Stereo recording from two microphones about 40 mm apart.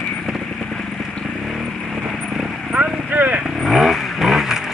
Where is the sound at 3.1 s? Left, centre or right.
Right.